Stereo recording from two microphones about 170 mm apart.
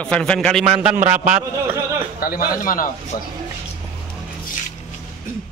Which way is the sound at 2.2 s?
60° left (ahead or behind).